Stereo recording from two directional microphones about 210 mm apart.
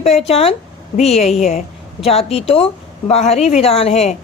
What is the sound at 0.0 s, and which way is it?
Speech, 30° left (ahead or behind).